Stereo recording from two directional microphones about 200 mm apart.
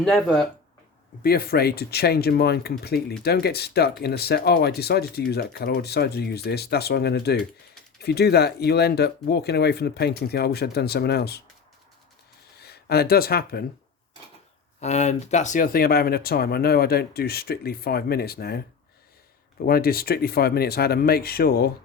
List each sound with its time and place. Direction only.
0.0 s speech: centre (ahead or behind)
1.2 s speech: 50° left (ahead or behind)
12.6 s speech: 50° left (ahead or behind)
14.8 s speech: 35° left (ahead or behind); by 18.6 s 50° left (ahead or behind)
19.6 s speech: 50° left (ahead or behind)